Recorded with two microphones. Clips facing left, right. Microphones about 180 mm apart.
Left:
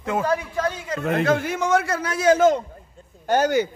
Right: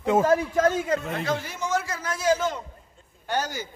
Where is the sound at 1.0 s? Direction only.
65° left (ahead or behind); by 3.5 s 50° left (ahead or behind).